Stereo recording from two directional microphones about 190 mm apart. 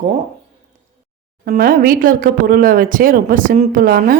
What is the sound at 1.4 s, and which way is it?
A woman's voice, 45° right (ahead or behind).